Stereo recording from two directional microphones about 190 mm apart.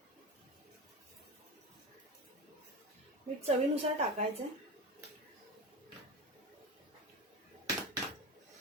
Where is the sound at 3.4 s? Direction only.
30° right (ahead or behind).